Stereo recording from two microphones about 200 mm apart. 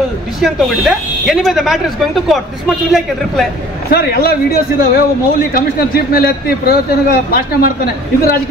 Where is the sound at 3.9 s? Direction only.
50° left (ahead or behind).